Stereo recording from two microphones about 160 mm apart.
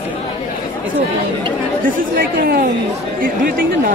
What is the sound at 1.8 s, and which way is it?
Speech, 65° right (ahead or behind).